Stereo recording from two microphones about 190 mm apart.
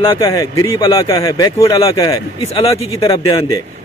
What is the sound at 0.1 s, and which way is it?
A man's voice, 15° left (ahead or behind).